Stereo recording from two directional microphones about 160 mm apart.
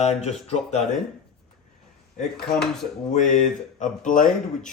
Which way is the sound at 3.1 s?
50° left (ahead or behind).